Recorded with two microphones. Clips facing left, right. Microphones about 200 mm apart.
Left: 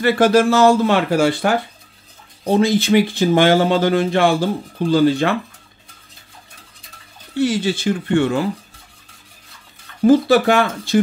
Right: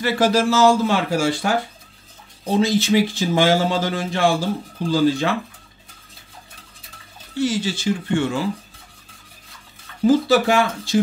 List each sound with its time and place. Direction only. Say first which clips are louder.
0.0 s speech: left 5 dB; 55° left (ahead or behind)
2.6 s speech: left 2 dB; 55° left (ahead or behind)
7.3 s speech: left 4 dB; 60° left (ahead or behind)
10.0 s speech: left 3 dB; 55° left (ahead or behind)